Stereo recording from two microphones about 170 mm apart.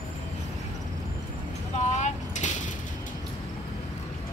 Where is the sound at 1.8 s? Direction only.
45° left (ahead or behind).